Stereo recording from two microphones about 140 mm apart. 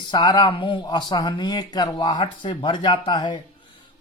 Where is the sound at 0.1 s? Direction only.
30° left (ahead or behind).